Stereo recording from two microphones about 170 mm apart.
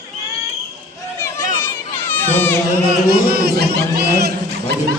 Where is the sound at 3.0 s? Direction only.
65° right (ahead or behind).